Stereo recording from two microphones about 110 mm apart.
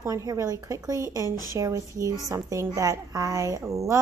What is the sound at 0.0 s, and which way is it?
A woman's voice, 30° right (ahead or behind).